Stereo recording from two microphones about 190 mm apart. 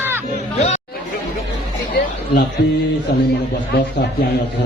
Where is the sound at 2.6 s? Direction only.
65° left (ahead or behind).